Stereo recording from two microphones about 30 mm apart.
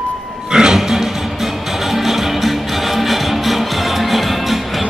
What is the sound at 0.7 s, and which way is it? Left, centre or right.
Music, centre.